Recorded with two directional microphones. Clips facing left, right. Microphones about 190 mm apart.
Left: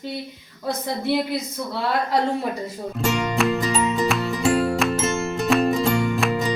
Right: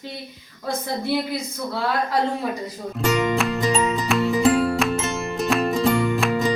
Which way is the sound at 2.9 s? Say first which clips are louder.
Right 2 dB; centre (ahead or behind).